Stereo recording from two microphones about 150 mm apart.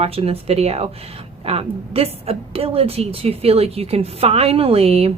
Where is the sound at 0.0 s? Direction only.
40° right (ahead or behind).